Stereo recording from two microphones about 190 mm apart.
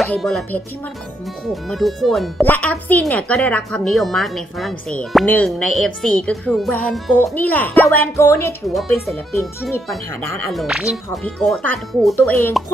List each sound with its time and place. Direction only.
0.0 s speech: centre (ahead or behind)
8.6 s speech: centre (ahead or behind)
9.4 s speech: 15° left (ahead or behind)
10.5 s speech: centre (ahead or behind)